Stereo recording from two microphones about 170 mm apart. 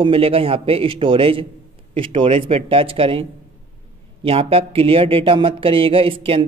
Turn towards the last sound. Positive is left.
turn(degrees=-30)  # may be behind; listen again after turning